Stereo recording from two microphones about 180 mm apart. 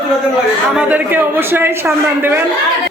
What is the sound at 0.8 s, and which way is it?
A man's voice, 10° right (ahead or behind).